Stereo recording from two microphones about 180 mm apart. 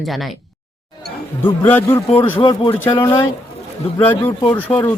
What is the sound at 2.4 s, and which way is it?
Speech, 25° left (ahead or behind).